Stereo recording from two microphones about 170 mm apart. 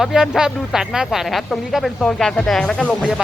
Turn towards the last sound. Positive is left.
turn(degrees=0)  # may be behind; listen again after turning